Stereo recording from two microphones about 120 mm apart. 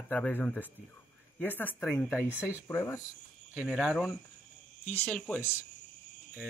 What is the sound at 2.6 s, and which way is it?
Speech, 25° left (ahead or behind).